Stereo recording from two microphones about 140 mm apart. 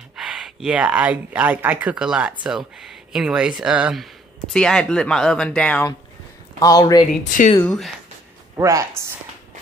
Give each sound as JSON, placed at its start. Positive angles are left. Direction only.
{"t": 0.1, "sound": "speech", "side_deg": -5}
{"t": 6.6, "sound": "speech", "side_deg": 25}
{"t": 7.6, "sound": "speech", "side_deg": 5}
{"t": 8.5, "sound": "a woman's voice", "side_deg": -20}